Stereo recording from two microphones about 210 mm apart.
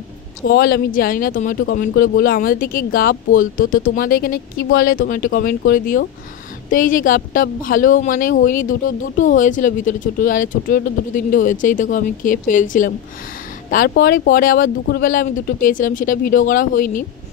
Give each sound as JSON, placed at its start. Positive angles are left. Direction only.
{"t": 0.5, "sound": "a woman's voice", "side_deg": 45}
{"t": 6.7, "sound": "a woman's voice", "side_deg": 40}